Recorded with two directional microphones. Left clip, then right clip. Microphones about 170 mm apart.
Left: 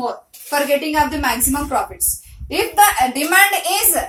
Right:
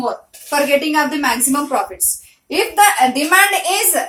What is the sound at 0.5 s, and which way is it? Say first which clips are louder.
A woman's voice: right 2 dB; 30° right (ahead or behind).